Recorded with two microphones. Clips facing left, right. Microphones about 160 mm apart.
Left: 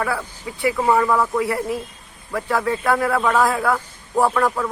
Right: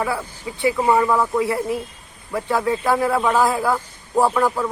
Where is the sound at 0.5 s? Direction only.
25° right (ahead or behind).